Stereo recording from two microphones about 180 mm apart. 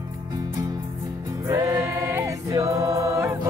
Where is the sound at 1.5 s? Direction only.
20° right (ahead or behind).